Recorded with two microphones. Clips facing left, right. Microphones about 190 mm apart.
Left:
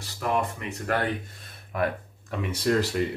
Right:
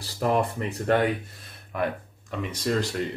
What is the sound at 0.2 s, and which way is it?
Speech, 35° right (ahead or behind).